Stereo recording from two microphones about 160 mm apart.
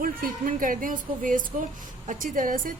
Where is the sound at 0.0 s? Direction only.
60° right (ahead or behind).